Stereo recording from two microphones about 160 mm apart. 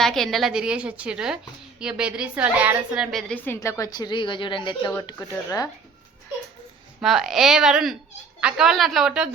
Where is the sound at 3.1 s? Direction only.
10° left (ahead or behind); by 4.9 s 30° left (ahead or behind).